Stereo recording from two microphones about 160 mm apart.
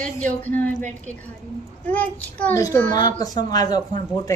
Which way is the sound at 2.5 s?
20° left (ahead or behind).